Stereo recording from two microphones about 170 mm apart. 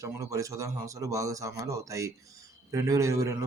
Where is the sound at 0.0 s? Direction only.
20° right (ahead or behind).